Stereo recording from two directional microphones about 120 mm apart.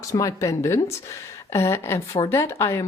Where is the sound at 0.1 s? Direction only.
25° left (ahead or behind).